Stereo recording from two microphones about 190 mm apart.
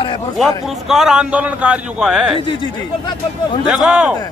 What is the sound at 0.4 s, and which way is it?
Speech, centre (ahead or behind).